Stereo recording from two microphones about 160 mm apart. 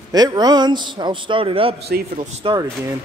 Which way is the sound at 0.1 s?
25° right (ahead or behind).